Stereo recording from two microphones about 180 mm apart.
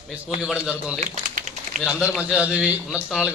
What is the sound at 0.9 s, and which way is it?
Speech, 40° right (ahead or behind).